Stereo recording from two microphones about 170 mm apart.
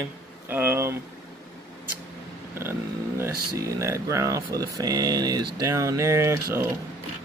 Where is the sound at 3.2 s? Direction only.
15° right (ahead or behind).